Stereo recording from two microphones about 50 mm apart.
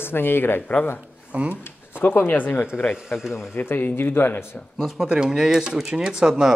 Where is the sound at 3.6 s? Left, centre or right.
Left.